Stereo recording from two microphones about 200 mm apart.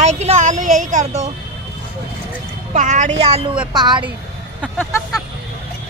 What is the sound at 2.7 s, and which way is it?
Speech, 40° right (ahead or behind).